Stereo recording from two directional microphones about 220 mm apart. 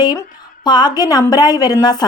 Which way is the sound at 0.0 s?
20° left (ahead or behind).